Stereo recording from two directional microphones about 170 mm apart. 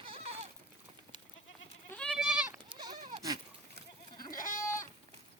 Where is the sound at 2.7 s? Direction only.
25° right (ahead or behind).